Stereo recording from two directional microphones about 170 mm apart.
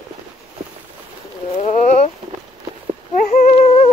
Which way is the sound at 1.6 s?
45° left (ahead or behind).